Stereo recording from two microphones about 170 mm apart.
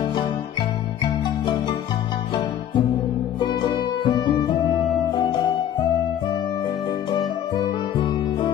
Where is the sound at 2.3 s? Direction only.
25° left (ahead or behind).